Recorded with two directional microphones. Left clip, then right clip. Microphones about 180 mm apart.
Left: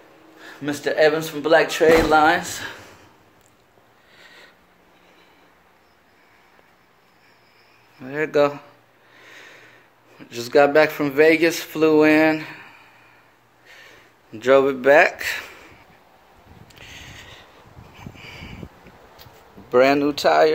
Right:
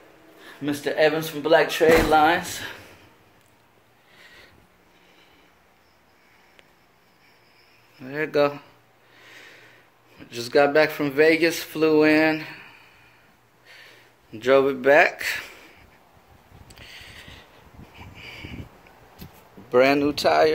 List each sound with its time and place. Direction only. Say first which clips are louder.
0.4 s speech: left 1 dB; 5° right (ahead or behind)
4.1 s sniff: left 2 dB; centre (ahead or behind)
8.0 s speech: left 3 dB; 10° left (ahead or behind)
13.7 s a sound: left 2 dB; centre (ahead or behind)
16.7 s a sound: left 2 dB; 10° left (ahead or behind)
19.7 s speech: left 2 dB; centre (ahead or behind)